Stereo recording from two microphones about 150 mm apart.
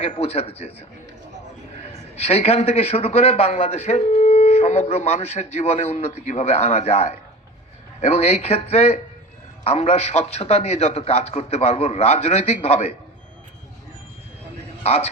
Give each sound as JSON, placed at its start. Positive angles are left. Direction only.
{"t": 0.0, "sound": "a man's voice", "side_deg": 45}
{"t": 1.9, "sound": "a man's voice", "side_deg": 45}
{"t": 14.8, "sound": "a man's voice", "side_deg": 45}